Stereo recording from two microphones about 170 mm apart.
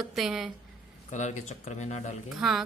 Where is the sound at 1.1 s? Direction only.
45° left (ahead or behind).